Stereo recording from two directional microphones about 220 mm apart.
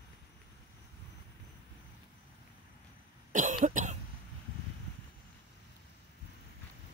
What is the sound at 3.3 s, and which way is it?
Cough, 35° right (ahead or behind).